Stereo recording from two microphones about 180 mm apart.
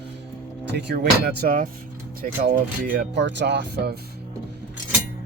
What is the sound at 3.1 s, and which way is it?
Speech, 75° right (ahead or behind).